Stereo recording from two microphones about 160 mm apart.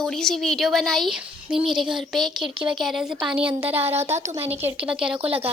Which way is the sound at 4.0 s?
40° right (ahead or behind).